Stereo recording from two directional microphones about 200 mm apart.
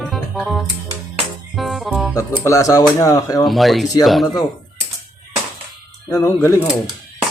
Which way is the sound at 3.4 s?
Centre (ahead or behind).